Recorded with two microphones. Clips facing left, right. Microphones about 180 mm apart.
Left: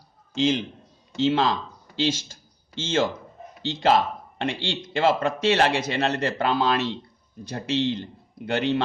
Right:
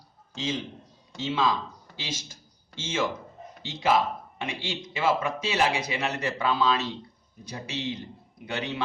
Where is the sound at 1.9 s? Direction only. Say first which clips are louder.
Left 13 dB; 85° left.